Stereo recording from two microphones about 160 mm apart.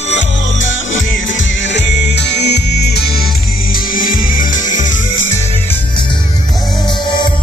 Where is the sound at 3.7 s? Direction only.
60° left (ahead or behind).